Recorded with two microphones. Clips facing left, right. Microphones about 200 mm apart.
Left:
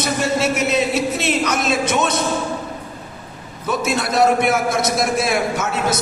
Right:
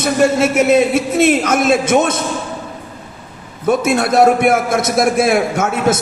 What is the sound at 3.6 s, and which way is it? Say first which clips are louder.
A man's voice: right 7 dB; 50° right (ahead or behind).